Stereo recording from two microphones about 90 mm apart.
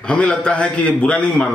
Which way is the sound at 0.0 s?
15° left (ahead or behind).